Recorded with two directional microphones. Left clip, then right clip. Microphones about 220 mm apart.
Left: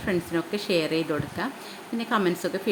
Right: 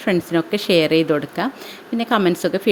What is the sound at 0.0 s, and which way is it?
A woman's voice, 35° right (ahead or behind).